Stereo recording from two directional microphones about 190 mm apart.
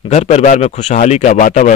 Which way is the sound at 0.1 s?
35° left (ahead or behind).